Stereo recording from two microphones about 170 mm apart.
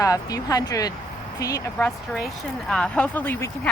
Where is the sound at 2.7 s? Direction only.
5° left (ahead or behind).